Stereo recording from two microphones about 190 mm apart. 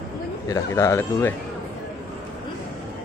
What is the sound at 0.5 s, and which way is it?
Speech, 15° left (ahead or behind).